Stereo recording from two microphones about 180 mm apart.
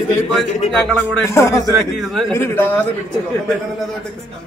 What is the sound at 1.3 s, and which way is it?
Speech, 15° left (ahead or behind).